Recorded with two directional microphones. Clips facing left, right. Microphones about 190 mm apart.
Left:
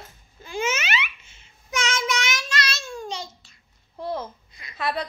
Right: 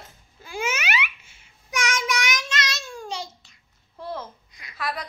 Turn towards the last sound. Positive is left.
turn(degrees=25)  # may be behind; listen again after turning